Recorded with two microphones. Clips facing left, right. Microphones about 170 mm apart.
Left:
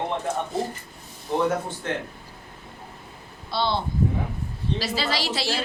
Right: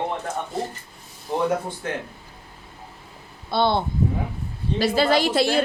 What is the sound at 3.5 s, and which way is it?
Speech, 55° right (ahead or behind).